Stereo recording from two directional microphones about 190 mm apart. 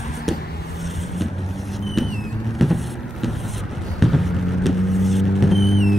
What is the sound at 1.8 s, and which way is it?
Vehicle, centre (ahead or behind).